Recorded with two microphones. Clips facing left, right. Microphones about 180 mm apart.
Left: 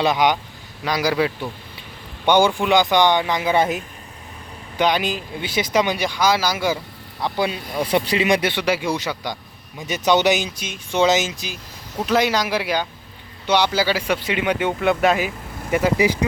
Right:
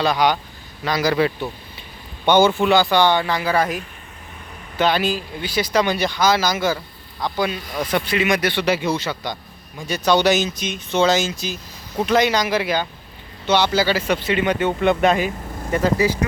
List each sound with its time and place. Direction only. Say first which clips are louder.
0.0 s a man's voice: even; 20° left (ahead or behind)
7.3 s speech: left 1 dB; 25° left (ahead or behind)
8.6 s a man's voice: right 1 dB; 10° left (ahead or behind)
12.0 s a man's voice: right 1 dB; 5° left (ahead or behind)